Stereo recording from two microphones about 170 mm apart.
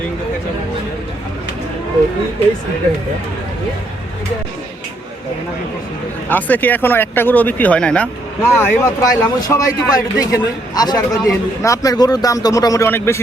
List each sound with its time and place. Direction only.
6.2 s speech: 10° left (ahead or behind)